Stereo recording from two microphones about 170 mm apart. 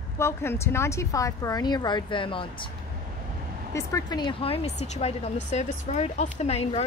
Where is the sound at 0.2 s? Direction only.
15° left (ahead or behind).